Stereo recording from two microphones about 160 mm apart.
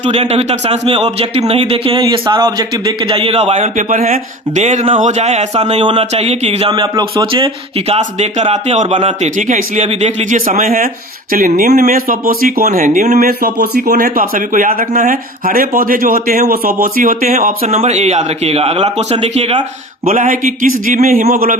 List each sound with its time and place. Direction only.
0.0 s speech: 40° right (ahead or behind)
6.7 s speech: 30° right (ahead or behind); by 17.7 s 60° right (ahead or behind)
17.7 s speech: 45° right (ahead or behind)
20.1 s speech: 55° right (ahead or behind)